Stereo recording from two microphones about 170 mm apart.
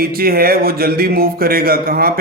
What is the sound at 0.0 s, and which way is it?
Speech, 60° right (ahead or behind).